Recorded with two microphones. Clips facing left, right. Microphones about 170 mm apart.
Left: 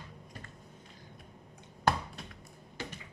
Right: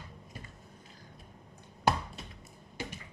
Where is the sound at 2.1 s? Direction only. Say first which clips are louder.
Even; 5° right (ahead or behind).